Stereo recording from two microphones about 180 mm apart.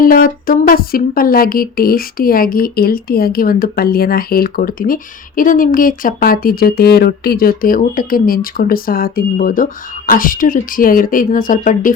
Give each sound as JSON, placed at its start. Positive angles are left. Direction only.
{"t": 0.0, "sound": "speech", "side_deg": 50}